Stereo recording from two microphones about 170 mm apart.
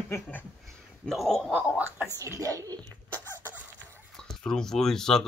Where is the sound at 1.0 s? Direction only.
Centre (ahead or behind).